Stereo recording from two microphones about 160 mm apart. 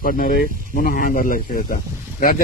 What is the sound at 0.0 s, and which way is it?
A man's voice, 60° left (ahead or behind).